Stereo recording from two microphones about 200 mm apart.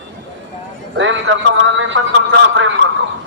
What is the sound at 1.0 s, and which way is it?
A man's voice, 70° right (ahead or behind).